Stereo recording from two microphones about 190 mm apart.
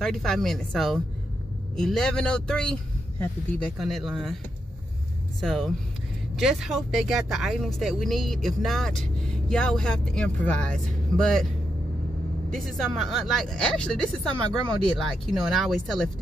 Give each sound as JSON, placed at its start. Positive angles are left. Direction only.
{"t": 0.0, "sound": "speech", "side_deg": 5}
{"t": 5.4, "sound": "speech", "side_deg": 0}
{"t": 12.5, "sound": "speech", "side_deg": 0}